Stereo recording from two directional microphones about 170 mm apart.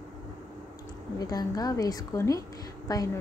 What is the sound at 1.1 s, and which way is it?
A woman's voice, 20° left (ahead or behind).